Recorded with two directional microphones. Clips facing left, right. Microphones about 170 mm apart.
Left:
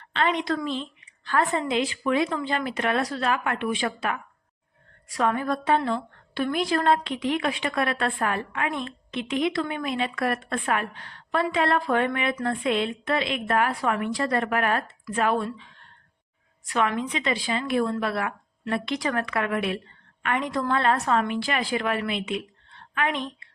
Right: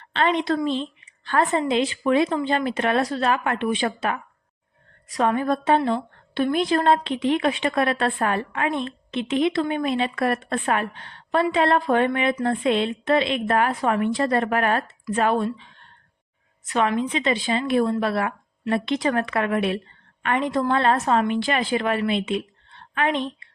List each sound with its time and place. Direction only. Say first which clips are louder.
0.1 s a woman's voice: right 3 dB; 30° right (ahead or behind)